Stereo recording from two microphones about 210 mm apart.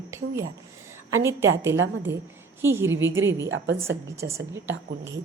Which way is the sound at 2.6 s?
10° right (ahead or behind).